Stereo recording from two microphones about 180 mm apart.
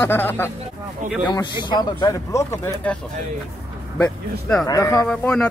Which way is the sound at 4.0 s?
10° left (ahead or behind).